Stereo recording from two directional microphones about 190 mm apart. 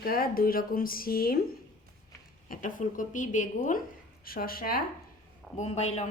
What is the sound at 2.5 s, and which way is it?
Speech, 45° left (ahead or behind).